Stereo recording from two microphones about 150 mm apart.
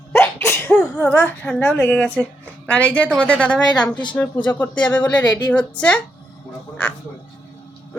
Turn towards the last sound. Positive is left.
turn(degrees=10)  # may be behind; listen again after turning